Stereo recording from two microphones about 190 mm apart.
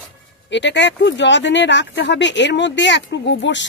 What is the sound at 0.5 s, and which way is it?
Speech, 70° left (ahead or behind).